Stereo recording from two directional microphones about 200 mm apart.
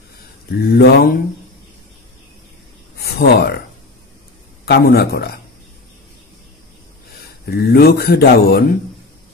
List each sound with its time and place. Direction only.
0.5 s speech: 55° left (ahead or behind)
3.0 s a sound: 55° left (ahead or behind)
4.6 s speech: 55° left (ahead or behind)
7.4 s speech: 50° left (ahead or behind)